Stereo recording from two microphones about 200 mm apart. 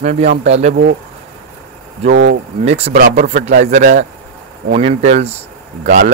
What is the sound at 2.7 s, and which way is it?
Speech, 30° right (ahead or behind).